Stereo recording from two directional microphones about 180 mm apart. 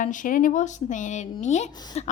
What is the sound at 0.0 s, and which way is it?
Speech, 45° left (ahead or behind).